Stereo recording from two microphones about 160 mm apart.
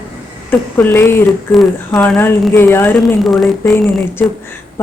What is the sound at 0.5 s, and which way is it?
Speech, 15° left (ahead or behind).